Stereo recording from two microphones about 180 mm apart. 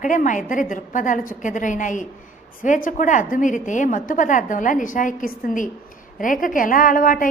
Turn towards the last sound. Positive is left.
turn(degrees=50)  # may be behind; listen again after turning